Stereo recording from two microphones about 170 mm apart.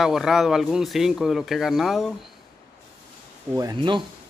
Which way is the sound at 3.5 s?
25° right (ahead or behind).